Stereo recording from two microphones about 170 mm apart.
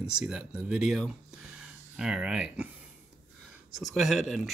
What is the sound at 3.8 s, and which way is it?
Speech, centre (ahead or behind).